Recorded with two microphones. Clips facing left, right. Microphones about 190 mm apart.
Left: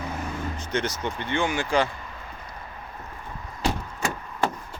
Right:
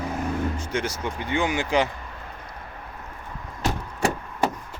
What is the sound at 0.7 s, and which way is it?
Speech, 10° right (ahead or behind).